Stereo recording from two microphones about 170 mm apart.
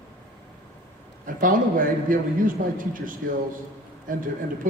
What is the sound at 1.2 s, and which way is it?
A man's voice, 55° right (ahead or behind).